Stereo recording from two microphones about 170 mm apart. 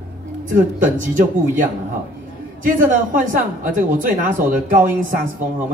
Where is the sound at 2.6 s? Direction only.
50° right (ahead or behind).